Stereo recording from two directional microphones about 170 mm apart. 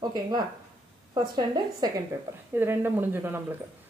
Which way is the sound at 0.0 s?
25° right (ahead or behind).